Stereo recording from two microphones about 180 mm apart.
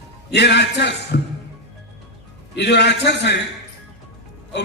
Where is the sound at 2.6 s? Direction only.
70° left (ahead or behind).